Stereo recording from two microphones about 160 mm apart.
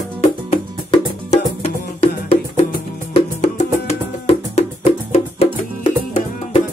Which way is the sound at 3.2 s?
45° left (ahead or behind).